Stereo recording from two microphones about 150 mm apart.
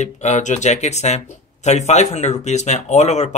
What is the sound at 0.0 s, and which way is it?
Speech, 50° left (ahead or behind).